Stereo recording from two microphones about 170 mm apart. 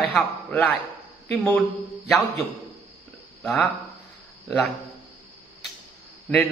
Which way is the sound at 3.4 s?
10° left (ahead or behind).